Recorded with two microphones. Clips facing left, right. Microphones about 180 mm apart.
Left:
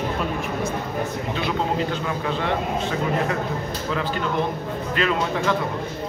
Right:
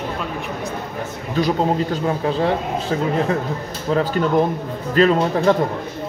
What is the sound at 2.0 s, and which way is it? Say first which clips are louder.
Speech: right 6 dB; 35° right (ahead or behind).